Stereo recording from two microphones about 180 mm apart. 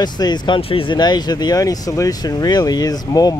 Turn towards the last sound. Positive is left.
turn(degrees=20)  # may be behind; listen again after turning